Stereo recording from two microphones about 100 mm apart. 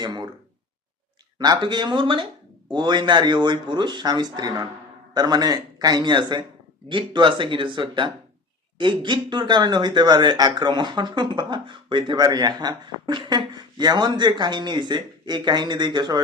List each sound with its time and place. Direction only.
0.0 s speech: 40° right (ahead or behind)
1.4 s a man's voice: 45° right (ahead or behind)